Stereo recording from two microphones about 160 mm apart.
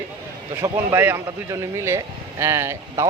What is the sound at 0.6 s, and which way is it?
A man's voice, 20° right (ahead or behind).